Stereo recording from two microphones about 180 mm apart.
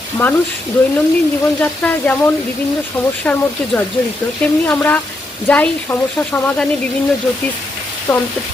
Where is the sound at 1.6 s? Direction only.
10° left (ahead or behind).